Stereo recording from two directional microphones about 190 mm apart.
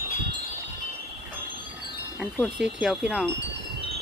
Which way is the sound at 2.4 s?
5° right (ahead or behind).